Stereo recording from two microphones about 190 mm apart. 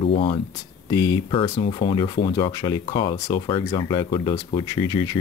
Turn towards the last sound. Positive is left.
turn(degrees=20)  # may be behind; listen again after turning